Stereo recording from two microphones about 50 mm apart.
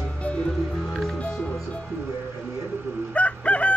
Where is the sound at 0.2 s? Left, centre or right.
Left.